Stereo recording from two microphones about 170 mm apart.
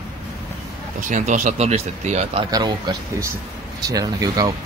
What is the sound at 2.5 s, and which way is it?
Speech, 25° right (ahead or behind).